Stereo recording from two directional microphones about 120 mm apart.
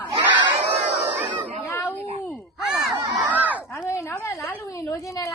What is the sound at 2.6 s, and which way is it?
Battle cry, 5° right (ahead or behind).